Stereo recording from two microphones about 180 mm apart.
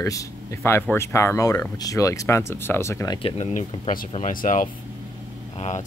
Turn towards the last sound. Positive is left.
turn(degrees=35)  # may be behind; listen again after turning